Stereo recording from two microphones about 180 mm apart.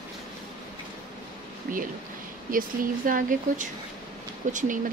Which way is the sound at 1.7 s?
50° right (ahead or behind).